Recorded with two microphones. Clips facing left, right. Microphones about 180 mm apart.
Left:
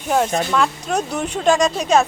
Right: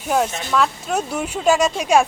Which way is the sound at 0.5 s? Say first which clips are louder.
Left 1 dB; 5° right (ahead or behind).